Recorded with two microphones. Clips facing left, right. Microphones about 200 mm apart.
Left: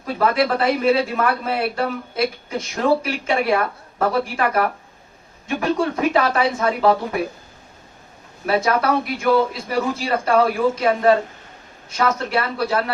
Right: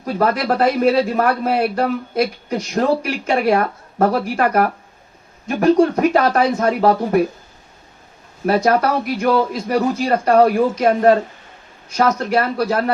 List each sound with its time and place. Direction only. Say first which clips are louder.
0.0 s a man's voice: even; 40° right (ahead or behind)
8.4 s a man's voice: right 3 dB; 40° right (ahead or behind)